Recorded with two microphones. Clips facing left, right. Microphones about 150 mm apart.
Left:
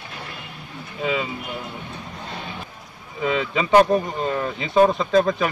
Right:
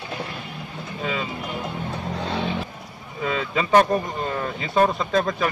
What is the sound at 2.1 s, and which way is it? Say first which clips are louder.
Vehicle: right 9 dB; 85° right.